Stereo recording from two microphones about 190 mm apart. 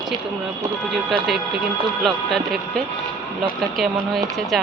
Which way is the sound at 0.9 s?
Centre (ahead or behind).